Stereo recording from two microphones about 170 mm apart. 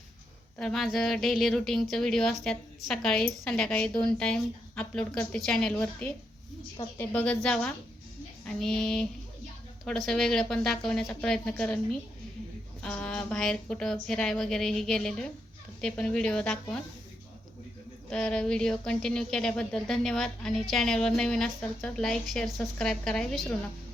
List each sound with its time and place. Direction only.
0.6 s a woman's voice: centre (ahead or behind)
18.1 s a woman's voice: 5° left (ahead or behind)